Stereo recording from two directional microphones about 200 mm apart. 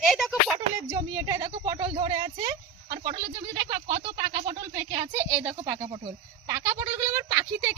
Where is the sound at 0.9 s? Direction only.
20° right (ahead or behind).